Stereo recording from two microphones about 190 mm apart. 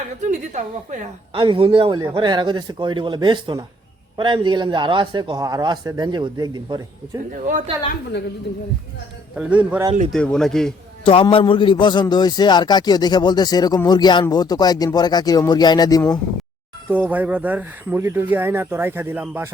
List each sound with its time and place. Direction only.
0.3 s a woman's voice: 40° right (ahead or behind)
1.4 s speech: 25° right (ahead or behind)
9.3 s speech: 5° right (ahead or behind)
10.1 s speech: 5° left (ahead or behind)
11.0 s a man's voice: 30° left (ahead or behind)
16.9 s speech: 10° right (ahead or behind)